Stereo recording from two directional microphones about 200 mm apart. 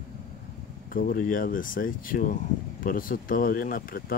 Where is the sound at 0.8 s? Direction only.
45° left (ahead or behind).